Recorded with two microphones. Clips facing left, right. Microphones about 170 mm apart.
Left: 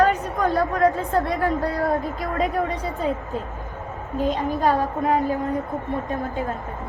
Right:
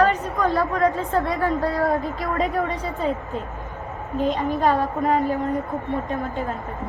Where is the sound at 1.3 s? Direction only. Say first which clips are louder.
Even; 20° left (ahead or behind).